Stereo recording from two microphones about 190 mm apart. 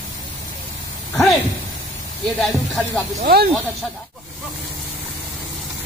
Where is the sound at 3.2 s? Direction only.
50° right (ahead or behind).